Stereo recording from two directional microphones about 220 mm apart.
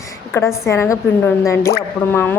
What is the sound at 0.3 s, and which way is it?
A woman's voice, 10° left (ahead or behind).